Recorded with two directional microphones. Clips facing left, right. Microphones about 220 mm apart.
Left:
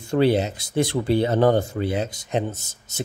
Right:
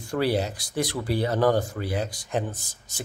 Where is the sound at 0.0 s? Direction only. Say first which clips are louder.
Left 5 dB; 25° left (ahead or behind).